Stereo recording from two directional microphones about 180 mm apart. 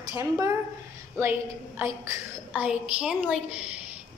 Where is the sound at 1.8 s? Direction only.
15° right (ahead or behind).